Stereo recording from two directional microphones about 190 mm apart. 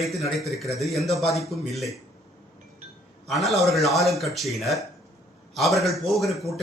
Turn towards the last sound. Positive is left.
turn(degrees=0)  # may be behind; listen again after turning